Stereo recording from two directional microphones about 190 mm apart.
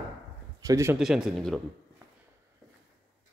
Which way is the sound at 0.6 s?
15° right (ahead or behind).